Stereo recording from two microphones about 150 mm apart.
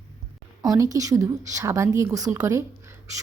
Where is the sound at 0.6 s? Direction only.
25° right (ahead or behind).